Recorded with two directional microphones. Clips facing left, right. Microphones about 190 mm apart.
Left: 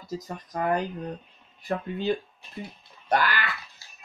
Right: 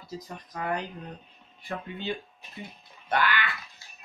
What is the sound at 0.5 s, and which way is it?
Speech, 45° left (ahead or behind).